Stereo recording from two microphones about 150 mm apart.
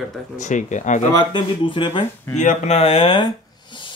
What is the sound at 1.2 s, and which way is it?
Speech, 35° left (ahead or behind).